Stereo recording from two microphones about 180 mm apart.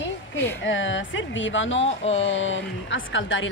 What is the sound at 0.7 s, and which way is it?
Speech, 90° left.